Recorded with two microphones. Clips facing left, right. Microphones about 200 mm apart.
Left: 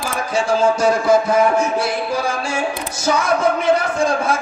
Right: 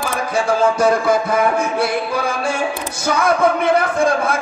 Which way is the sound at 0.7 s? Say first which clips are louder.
Even; 55° right (ahead or behind).